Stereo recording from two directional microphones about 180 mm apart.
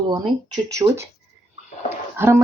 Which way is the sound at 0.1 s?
20° right (ahead or behind).